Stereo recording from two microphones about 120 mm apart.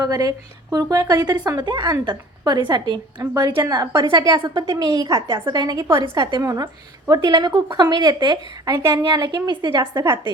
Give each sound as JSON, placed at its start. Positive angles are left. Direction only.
{"t": 0.0, "sound": "a woman's voice", "side_deg": -30}
{"t": 9.9, "sound": "speech", "side_deg": -25}